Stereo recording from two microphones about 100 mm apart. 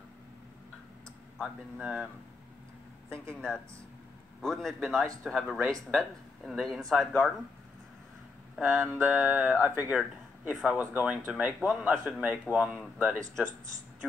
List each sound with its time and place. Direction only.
1.8 s speech: 10° right (ahead or behind)
3.3 s speech: 10° left (ahead or behind)
8.6 s speech: 5° left (ahead or behind)
9.2 s speech: 20° right (ahead or behind)